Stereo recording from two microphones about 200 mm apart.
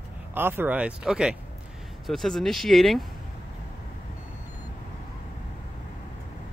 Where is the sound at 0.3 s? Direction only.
10° right (ahead or behind).